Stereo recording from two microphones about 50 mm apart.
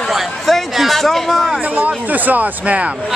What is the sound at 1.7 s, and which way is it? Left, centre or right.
Speech, right.